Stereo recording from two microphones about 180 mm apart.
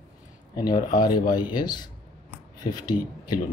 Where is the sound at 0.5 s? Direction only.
20° left (ahead or behind).